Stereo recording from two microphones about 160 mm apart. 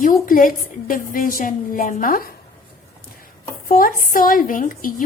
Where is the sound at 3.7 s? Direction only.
60° left (ahead or behind).